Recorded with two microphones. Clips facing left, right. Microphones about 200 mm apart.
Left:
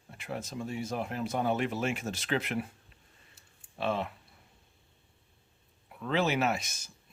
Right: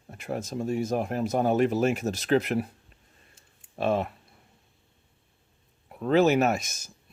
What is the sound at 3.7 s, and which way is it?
Speech, 45° right (ahead or behind).